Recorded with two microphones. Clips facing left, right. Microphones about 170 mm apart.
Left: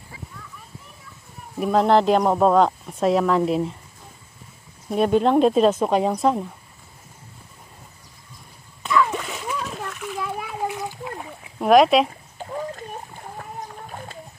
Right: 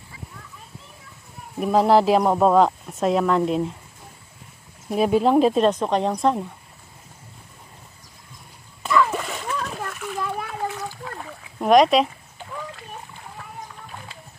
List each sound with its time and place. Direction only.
1.6 s speech: 5° right (ahead or behind)
4.8 s speech: centre (ahead or behind)
8.8 s splash: centre (ahead or behind); by 11.5 s 15° left (ahead or behind)
11.6 s speech: centre (ahead or behind)
12.4 s splash: 35° left (ahead or behind)